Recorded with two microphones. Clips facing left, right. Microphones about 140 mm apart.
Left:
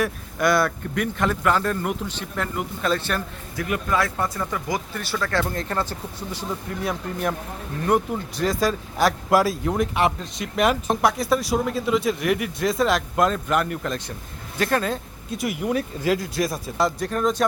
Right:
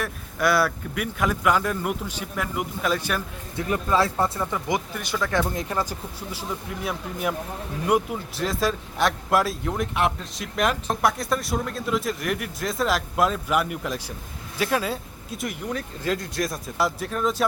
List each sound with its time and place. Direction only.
0.0 s speech: centre (ahead or behind)
3.6 s a man's voice: 25° right (ahead or behind)
4.4 s speech: 15° right (ahead or behind)